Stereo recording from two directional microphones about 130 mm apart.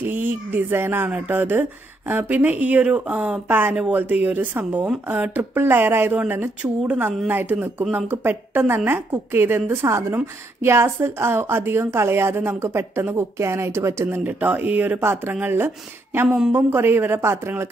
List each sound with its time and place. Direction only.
0.0 s a woman's voice: 15° right (ahead or behind)